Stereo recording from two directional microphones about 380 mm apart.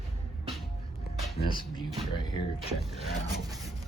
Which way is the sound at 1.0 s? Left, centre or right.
Left.